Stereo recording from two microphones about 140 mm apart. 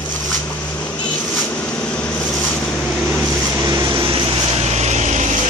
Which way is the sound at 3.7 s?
30° right (ahead or behind).